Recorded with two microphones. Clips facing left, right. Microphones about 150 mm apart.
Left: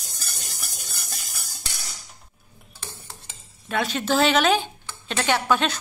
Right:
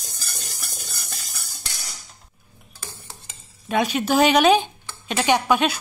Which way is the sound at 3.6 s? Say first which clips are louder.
Right 4 dB; 15° right (ahead or behind).